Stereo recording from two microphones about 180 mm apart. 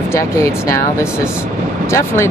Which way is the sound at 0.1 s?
15° left (ahead or behind).